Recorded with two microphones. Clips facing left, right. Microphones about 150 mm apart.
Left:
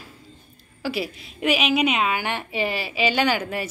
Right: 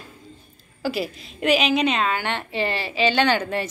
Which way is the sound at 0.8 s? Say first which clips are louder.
Right 2 dB; centre (ahead or behind).